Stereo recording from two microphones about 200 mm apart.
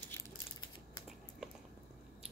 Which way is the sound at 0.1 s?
20° left (ahead or behind).